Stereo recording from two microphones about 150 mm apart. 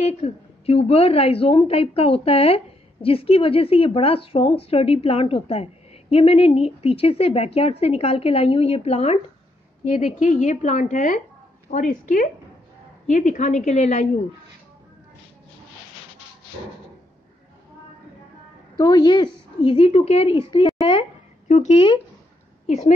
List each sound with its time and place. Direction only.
0.2 s a woman's voice: 40° left (ahead or behind)
18.8 s a woman's voice: 30° left (ahead or behind)
21.5 s a woman's voice: 50° left (ahead or behind)
22.7 s a woman's voice: 50° left (ahead or behind)